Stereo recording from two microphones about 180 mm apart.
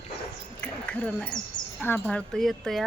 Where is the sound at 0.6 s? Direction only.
10° left (ahead or behind).